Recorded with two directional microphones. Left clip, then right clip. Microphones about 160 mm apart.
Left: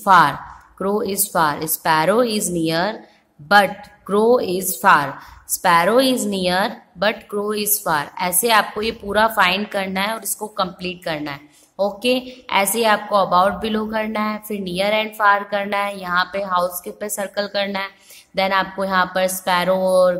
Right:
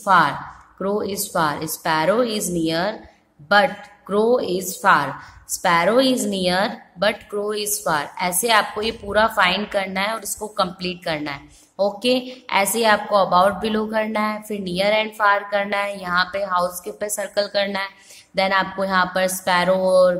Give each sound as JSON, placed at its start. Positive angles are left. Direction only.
{"t": 0.0, "sound": "a woman's voice", "side_deg": 20}